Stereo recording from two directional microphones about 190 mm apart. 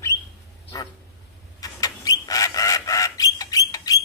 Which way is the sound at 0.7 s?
20° left (ahead or behind).